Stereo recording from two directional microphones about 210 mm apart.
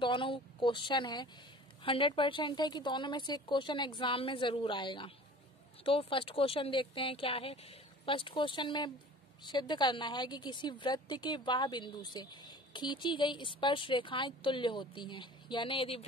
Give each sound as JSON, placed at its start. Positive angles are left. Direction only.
{"t": 0.0, "sound": "a woman's voice", "side_deg": 25}